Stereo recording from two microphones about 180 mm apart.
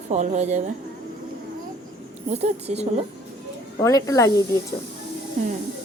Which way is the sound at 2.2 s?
35° right (ahead or behind).